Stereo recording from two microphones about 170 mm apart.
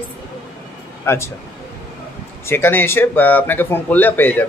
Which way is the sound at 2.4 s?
15° left (ahead or behind).